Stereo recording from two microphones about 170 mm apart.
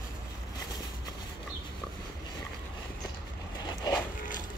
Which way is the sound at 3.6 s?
25° left (ahead or behind).